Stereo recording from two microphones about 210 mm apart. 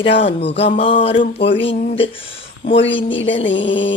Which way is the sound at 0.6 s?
25° left (ahead or behind).